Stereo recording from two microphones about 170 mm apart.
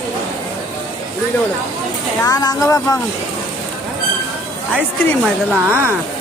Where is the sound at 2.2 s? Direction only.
20° left (ahead or behind).